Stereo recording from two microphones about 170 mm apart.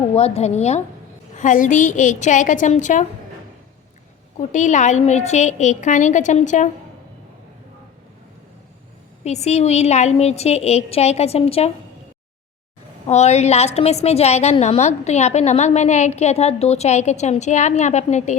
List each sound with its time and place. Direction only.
0.1 s a woman's voice: 35° left (ahead or behind)
4.5 s a woman's voice: 45° left (ahead or behind)
9.2 s a woman's voice: 40° left (ahead or behind)
13.1 s a woman's voice: 40° left (ahead or behind)